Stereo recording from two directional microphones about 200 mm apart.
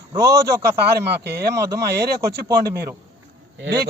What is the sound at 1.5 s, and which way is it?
Speech, 15° right (ahead or behind).